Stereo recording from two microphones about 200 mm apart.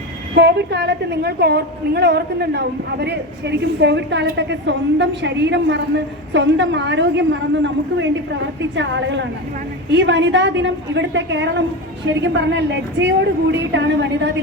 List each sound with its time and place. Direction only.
0.3 s a woman's voice: 55° right (ahead or behind)